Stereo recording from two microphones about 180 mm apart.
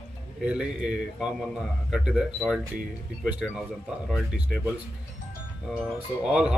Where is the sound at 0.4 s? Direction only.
5° right (ahead or behind).